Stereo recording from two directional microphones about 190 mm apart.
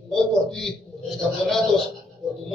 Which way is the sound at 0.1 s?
Centre (ahead or behind).